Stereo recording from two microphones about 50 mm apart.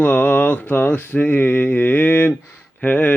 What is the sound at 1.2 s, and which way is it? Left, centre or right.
Speech, left.